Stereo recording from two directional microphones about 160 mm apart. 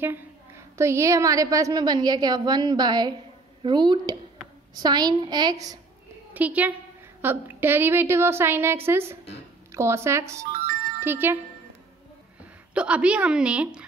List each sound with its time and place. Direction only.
0.0 s a woman's voice: 15° right (ahead or behind)
6.3 s a woman's voice: 10° right (ahead or behind)
11.0 s wind chime: 15° right (ahead or behind)
12.7 s a woman's voice: 5° right (ahead or behind)